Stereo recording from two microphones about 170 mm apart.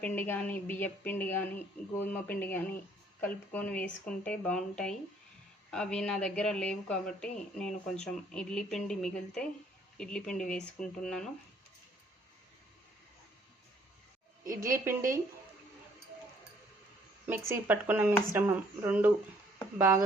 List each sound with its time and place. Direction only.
0.0 s speech: 10° left (ahead or behind)
14.6 s speech: 15° right (ahead or behind)
17.2 s speech: 10° right (ahead or behind)